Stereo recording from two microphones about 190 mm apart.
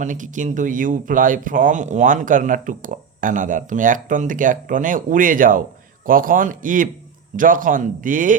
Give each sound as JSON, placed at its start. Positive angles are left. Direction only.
{"t": 0.0, "sound": "speech", "side_deg": -40}